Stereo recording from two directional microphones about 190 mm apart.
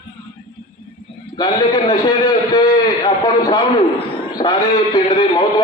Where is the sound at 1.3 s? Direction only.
20° left (ahead or behind).